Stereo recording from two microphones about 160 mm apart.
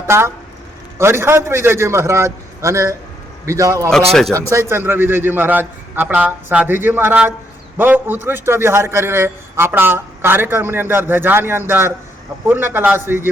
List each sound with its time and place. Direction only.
0.1 s a man's voice: 15° right (ahead or behind)